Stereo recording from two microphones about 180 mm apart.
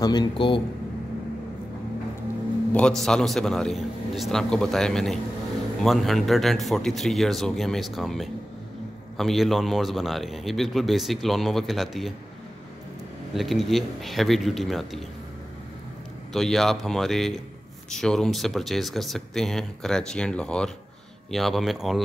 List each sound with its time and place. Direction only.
0.0 s a man's voice: 25° left (ahead or behind)
2.7 s speech: 5° left (ahead or behind)
13.3 s speech: centre (ahead or behind)
16.3 s speech: centre (ahead or behind)